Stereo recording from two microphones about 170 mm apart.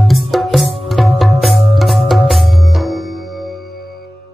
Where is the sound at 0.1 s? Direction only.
Centre (ahead or behind).